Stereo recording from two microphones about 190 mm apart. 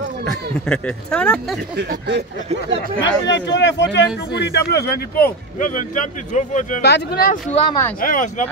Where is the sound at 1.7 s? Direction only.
65° right (ahead or behind).